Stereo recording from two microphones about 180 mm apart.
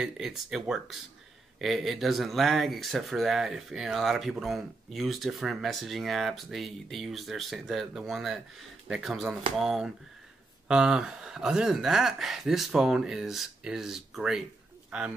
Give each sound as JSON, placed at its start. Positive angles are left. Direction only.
{"t": 0.0, "sound": "speech", "side_deg": -5}